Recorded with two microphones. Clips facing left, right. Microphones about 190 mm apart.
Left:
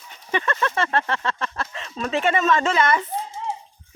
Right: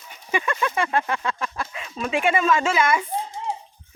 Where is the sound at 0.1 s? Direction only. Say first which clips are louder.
Even; 10° right (ahead or behind).